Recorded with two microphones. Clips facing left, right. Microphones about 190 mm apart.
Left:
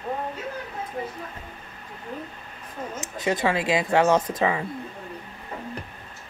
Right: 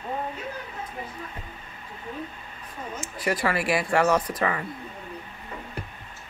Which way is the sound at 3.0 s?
20° left (ahead or behind).